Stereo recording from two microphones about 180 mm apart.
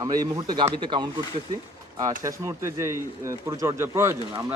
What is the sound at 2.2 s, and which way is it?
Speech, 15° right (ahead or behind).